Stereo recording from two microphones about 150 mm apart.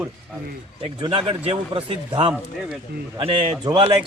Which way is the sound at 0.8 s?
30° right (ahead or behind).